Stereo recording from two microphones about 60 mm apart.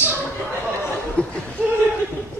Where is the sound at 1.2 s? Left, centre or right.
Left.